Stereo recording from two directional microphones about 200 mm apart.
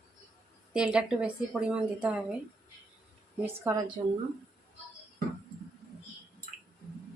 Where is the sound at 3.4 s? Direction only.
15° right (ahead or behind).